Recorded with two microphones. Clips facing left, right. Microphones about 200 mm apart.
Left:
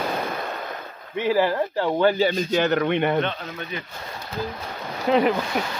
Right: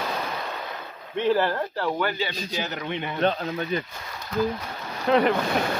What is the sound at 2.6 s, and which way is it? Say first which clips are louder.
Speech: left 10 dB; 60° left (ahead or behind).